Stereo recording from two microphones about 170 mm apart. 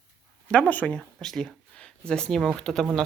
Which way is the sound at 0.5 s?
10° left (ahead or behind).